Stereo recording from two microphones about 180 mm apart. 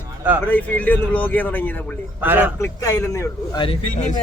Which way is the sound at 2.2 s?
10° right (ahead or behind).